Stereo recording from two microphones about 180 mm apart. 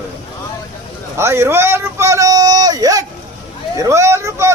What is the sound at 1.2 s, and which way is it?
Speech, 15° right (ahead or behind).